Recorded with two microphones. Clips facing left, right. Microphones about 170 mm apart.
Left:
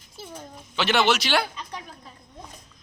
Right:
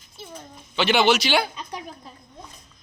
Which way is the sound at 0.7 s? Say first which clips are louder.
Right 3 dB; centre (ahead or behind).